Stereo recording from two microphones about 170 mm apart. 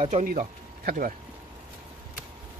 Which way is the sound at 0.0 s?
45° right (ahead or behind).